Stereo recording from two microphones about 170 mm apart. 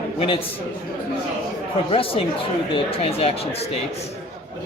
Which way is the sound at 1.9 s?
35° left (ahead or behind).